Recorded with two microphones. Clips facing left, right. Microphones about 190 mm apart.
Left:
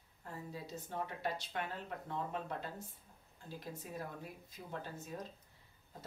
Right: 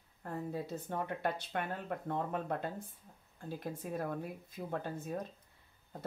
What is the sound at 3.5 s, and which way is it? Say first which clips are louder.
Speech: right 6 dB; 55° right (ahead or behind).